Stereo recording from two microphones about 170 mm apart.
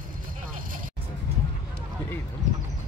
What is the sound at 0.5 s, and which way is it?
Music, 55° right (ahead or behind).